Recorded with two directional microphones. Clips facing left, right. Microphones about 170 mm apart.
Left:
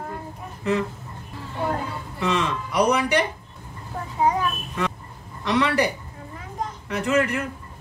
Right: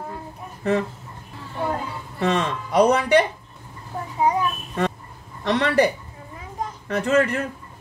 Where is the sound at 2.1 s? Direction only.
50° right (ahead or behind).